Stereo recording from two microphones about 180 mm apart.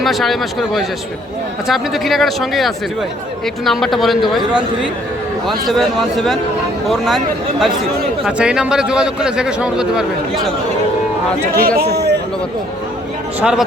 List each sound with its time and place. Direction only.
0.0 s a man's voice: centre (ahead or behind)
8.2 s a man's voice: 5° right (ahead or behind)
11.5 s speech: 55° right (ahead or behind)
13.4 s a man's voice: 5° right (ahead or behind)